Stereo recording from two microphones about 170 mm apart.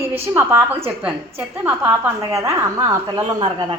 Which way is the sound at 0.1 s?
10° right (ahead or behind).